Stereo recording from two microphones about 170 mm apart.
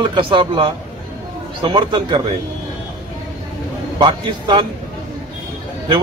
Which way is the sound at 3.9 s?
30° right (ahead or behind).